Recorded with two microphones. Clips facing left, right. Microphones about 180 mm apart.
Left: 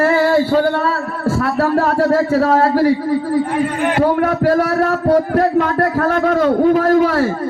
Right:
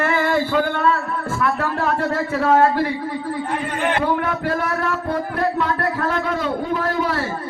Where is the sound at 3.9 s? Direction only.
40° left (ahead or behind).